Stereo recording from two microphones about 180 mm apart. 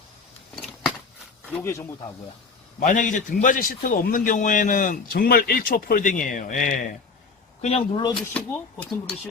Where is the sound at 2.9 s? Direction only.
45° left (ahead or behind).